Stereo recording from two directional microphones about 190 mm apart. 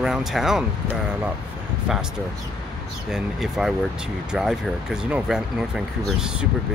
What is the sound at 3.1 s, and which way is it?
Speech, centre (ahead or behind).